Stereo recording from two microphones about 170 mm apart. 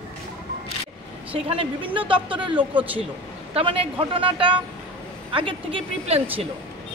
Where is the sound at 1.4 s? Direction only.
35° right (ahead or behind).